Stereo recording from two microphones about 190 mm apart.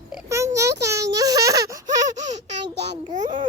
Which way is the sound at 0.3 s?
15° right (ahead or behind).